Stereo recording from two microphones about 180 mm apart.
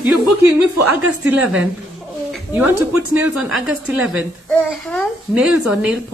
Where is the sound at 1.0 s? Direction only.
5° right (ahead or behind).